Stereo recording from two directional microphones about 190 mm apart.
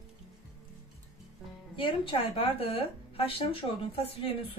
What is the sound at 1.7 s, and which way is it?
Speech, 25° left (ahead or behind).